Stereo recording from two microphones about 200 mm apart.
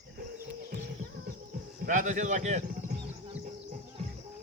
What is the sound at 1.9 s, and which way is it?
Speech, 40° right (ahead or behind).